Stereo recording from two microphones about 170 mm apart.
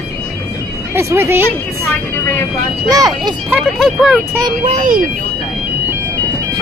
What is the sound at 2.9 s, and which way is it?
Speech, 20° right (ahead or behind).